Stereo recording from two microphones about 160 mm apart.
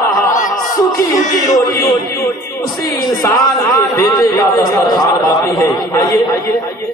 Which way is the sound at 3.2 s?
20° left (ahead or behind).